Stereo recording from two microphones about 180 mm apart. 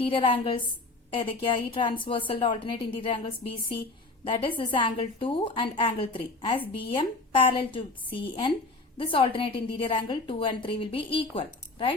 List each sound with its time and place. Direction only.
0.0 s a woman's voice: 30° left (ahead or behind)